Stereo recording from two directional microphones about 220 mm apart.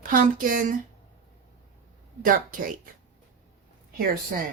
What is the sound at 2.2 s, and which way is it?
Speech, 40° right (ahead or behind).